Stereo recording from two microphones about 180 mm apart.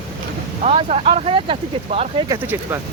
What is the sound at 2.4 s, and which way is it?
Speech, 10° right (ahead or behind).